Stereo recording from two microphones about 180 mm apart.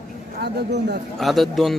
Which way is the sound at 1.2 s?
Centre (ahead or behind).